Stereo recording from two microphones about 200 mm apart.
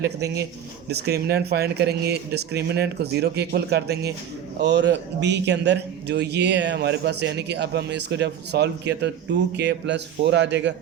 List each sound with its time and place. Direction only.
0.9 s speech: 55° right (ahead or behind)